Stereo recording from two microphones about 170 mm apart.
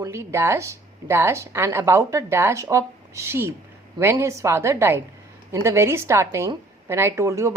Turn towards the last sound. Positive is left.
turn(degrees=-20)  # may be behind; listen again after turning